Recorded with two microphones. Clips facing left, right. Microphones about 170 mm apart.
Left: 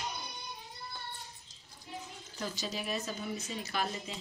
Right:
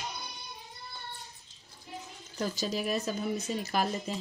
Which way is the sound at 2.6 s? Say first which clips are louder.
Right 6 dB; 45° right (ahead or behind).